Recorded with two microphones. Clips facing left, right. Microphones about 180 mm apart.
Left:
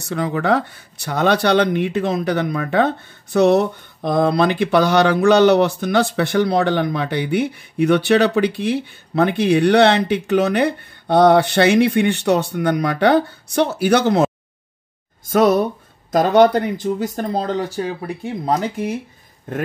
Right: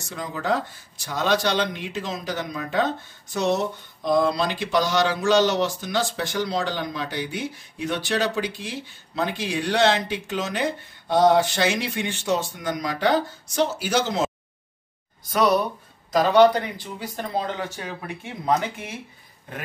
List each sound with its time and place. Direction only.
0.0 s speech: 65° left (ahead or behind)
15.2 s speech: 50° left (ahead or behind)